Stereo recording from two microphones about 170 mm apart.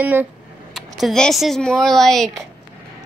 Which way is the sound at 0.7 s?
Centre (ahead or behind).